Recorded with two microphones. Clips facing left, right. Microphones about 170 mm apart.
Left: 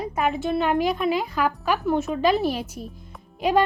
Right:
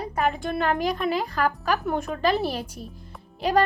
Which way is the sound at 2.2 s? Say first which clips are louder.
Left 3 dB; 40° right (ahead or behind).